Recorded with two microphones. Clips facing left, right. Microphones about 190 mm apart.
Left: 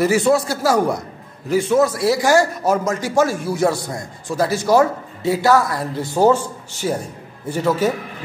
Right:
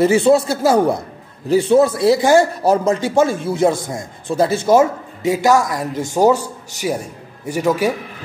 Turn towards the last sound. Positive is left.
turn(degrees=-15)  # may be behind; listen again after turning